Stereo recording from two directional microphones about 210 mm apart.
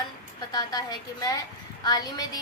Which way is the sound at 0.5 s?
20° left (ahead or behind).